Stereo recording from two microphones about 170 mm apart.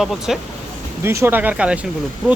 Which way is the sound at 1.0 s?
15° right (ahead or behind).